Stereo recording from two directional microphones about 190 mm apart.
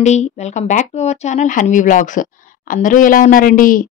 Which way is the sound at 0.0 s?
35° left (ahead or behind).